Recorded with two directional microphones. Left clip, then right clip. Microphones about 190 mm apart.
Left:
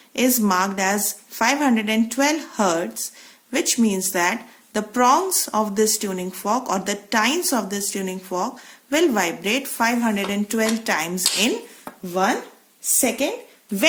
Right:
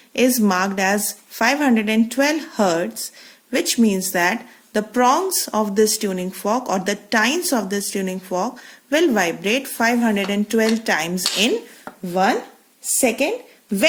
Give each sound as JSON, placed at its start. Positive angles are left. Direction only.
{"t": 0.1, "sound": "speech", "side_deg": -35}
{"t": 12.0, "sound": "speech", "side_deg": -45}